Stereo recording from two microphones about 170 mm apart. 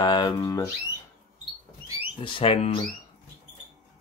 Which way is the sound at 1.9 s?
30° left (ahead or behind).